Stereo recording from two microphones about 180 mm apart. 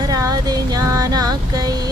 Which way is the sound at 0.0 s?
20° right (ahead or behind).